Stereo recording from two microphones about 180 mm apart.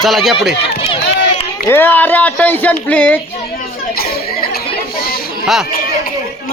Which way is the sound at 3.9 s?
60° left (ahead or behind).